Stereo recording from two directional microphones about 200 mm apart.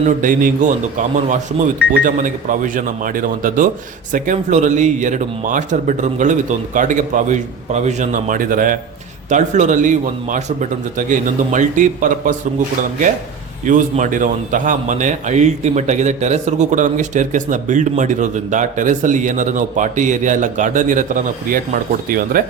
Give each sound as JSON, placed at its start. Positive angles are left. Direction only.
{"t": 0.2, "sound": "a man's voice", "side_deg": -40}
{"t": 13.7, "sound": "a man's voice", "side_deg": -40}